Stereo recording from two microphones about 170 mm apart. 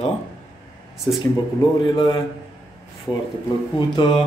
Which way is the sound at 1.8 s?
30° left (ahead or behind).